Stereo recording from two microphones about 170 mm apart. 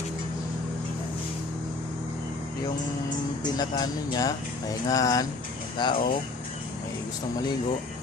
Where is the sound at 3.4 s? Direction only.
25° left (ahead or behind).